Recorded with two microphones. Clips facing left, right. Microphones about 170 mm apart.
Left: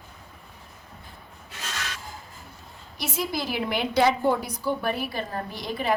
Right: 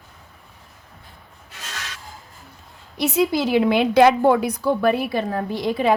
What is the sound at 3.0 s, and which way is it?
A woman's voice, 70° right (ahead or behind).